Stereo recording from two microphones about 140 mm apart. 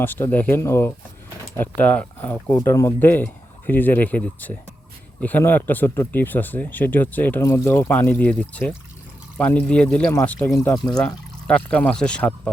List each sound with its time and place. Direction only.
0.0 s speech: 15° left (ahead or behind)